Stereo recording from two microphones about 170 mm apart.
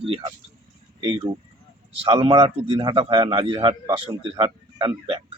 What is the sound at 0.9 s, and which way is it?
A man's voice, 30° right (ahead or behind).